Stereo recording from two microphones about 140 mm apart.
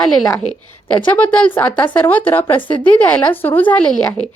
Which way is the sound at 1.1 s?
10° left (ahead or behind).